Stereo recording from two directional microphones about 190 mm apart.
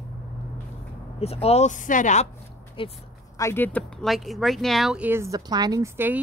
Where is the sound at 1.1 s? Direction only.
30° left (ahead or behind).